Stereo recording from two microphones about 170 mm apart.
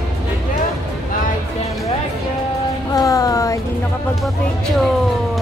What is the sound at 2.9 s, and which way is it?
Music, 20° left (ahead or behind).